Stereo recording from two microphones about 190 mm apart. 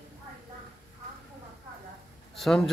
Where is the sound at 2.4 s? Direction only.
Centre (ahead or behind).